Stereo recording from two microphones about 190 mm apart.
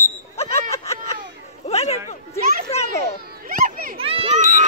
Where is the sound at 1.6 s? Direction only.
35° left (ahead or behind).